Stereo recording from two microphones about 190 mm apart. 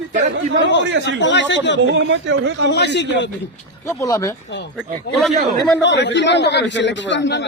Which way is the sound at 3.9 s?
15° left (ahead or behind).